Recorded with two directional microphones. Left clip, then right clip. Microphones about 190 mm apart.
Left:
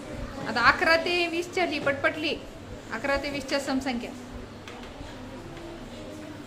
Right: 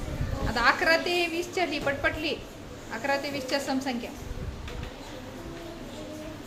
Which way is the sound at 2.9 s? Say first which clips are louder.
Left 1 dB; 10° left (ahead or behind).